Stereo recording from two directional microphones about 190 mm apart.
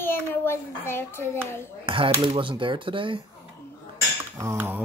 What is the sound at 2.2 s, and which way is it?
Speech, 25° right (ahead or behind).